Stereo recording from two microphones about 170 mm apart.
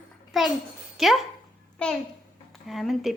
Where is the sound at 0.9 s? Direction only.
Centre (ahead or behind).